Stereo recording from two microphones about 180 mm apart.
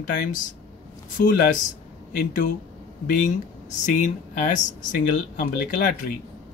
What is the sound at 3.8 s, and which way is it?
Speech, 45° left (ahead or behind).